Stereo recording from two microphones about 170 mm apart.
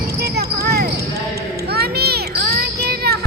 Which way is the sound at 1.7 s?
70° right (ahead or behind).